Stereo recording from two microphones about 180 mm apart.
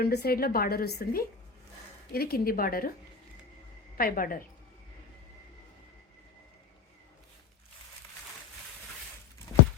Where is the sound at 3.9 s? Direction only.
50° left (ahead or behind).